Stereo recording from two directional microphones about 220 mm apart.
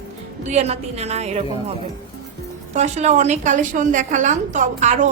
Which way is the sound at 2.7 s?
30° right (ahead or behind).